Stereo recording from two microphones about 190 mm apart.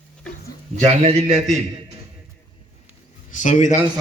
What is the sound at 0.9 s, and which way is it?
Speech, 35° right (ahead or behind).